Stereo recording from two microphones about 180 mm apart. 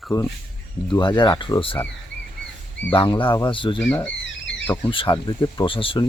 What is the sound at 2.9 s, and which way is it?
Speech, 25° left (ahead or behind).